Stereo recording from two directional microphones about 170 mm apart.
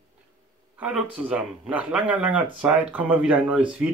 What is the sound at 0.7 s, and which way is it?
Speech, 5° right (ahead or behind).